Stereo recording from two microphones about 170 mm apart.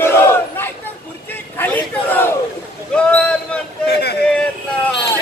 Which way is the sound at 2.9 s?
5° left (ahead or behind).